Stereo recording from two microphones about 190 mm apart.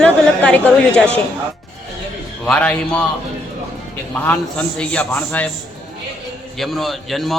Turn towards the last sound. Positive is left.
turn(degrees=0)  # may be behind; listen again after turning